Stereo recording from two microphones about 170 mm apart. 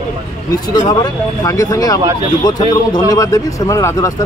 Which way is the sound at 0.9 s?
25° left (ahead or behind).